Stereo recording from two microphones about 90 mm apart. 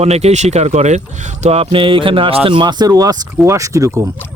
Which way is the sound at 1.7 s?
75° right (ahead or behind).